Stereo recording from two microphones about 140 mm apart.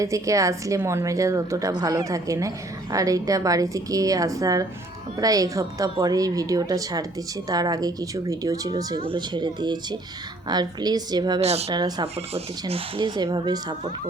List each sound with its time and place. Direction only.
0.0 s a woman's voice: 25° right (ahead or behind)
9.0 s a woman's voice: 35° right (ahead or behind)
11.3 s a woman's voice: 50° right (ahead or behind)
11.7 s a woman's voice: 30° right (ahead or behind)
12.3 s speech: 45° right (ahead or behind)